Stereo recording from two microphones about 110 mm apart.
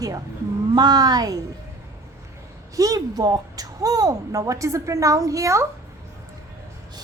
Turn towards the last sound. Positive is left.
turn(degrees=-25)  # may be behind; listen again after turning